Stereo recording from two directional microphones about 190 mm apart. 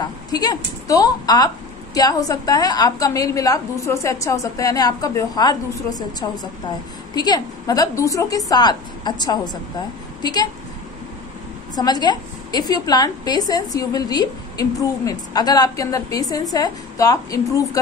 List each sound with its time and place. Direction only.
0.0 s a woman's voice: 20° left (ahead or behind)
11.7 s a woman's voice: 20° left (ahead or behind)